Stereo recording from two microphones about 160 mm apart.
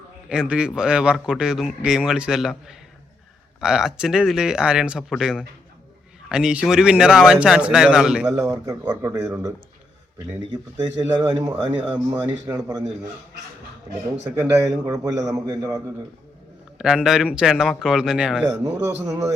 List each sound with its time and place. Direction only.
0.3 s a man's voice: 5° right (ahead or behind)
8.4 s a man's voice: 20° right (ahead or behind)
8.8 s a man's voice: 10° right (ahead or behind)
14.3 s speech: 10° right (ahead or behind)
15.3 s a man's voice: 20° right (ahead or behind)
16.7 s a man's voice: 5° right (ahead or behind)
18.4 s a man's voice: 20° right (ahead or behind)